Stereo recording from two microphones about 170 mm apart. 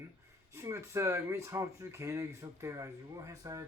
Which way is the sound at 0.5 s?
15° right (ahead or behind).